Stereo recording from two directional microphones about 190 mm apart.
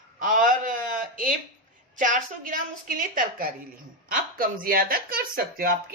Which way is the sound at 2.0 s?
45° right (ahead or behind).